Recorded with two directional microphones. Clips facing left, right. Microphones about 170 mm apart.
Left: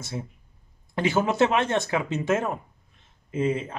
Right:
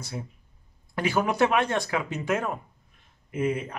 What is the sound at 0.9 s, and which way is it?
Speech, 25° left (ahead or behind).